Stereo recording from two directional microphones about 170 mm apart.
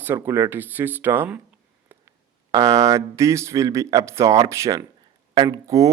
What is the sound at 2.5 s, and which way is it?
Speech, 20° right (ahead or behind).